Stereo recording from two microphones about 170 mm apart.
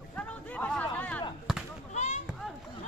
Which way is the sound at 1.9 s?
45° left (ahead or behind).